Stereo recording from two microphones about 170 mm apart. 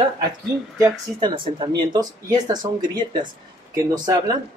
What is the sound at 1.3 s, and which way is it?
Speech, 30° right (ahead or behind).